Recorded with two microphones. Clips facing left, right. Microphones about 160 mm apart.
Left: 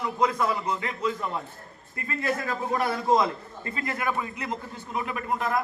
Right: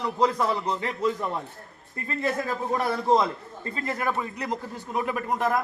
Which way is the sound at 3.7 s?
35° right (ahead or behind).